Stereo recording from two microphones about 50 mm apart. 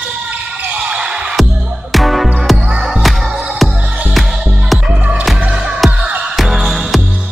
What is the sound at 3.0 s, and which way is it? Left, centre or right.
Music, centre.